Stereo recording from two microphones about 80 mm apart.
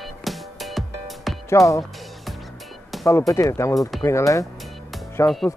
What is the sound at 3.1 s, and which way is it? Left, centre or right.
Speech, left.